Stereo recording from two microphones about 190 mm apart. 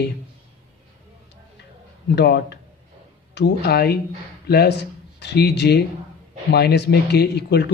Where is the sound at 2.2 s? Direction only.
60° left (ahead or behind).